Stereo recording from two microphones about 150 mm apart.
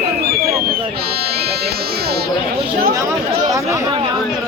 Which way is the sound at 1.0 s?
90° right.